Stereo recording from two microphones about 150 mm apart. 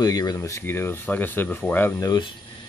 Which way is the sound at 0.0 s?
25° left (ahead or behind).